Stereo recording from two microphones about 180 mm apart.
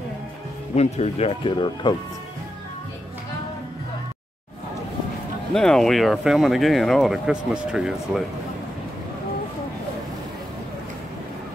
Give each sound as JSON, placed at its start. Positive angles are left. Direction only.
{"t": 0.7, "sound": "speech", "side_deg": 35}
{"t": 5.5, "sound": "speech", "side_deg": 5}